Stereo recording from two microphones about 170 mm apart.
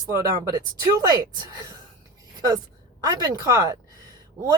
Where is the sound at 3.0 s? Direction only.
25° right (ahead or behind).